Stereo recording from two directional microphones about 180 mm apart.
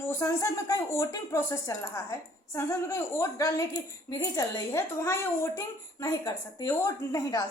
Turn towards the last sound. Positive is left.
turn(degrees=20)  # may be behind; listen again after turning